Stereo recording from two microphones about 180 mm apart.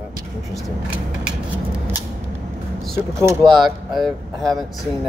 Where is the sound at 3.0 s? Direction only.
15° right (ahead or behind).